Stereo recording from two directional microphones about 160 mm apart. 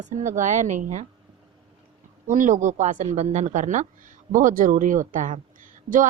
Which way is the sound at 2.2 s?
55° right (ahead or behind).